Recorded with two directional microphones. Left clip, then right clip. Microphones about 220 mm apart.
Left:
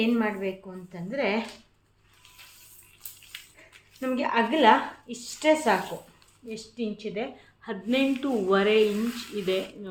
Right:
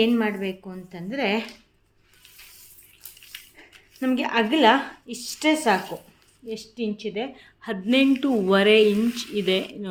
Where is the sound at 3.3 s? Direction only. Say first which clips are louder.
Right 1 dB; 15° right (ahead or behind).